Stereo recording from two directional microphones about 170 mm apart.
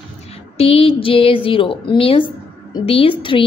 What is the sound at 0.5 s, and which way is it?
A woman's voice, 35° left (ahead or behind).